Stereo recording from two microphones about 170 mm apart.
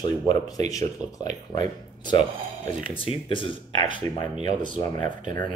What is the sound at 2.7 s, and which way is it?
Speech, 50° right (ahead or behind).